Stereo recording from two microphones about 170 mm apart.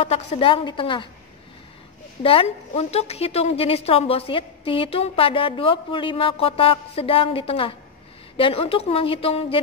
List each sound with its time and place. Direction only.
0.0 s a woman's voice: 35° left (ahead or behind)
2.2 s a woman's voice: 35° left (ahead or behind)